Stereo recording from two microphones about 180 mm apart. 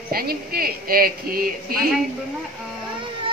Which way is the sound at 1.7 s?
55° right (ahead or behind).